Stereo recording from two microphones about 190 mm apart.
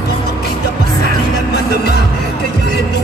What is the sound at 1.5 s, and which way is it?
Music, 55° left (ahead or behind).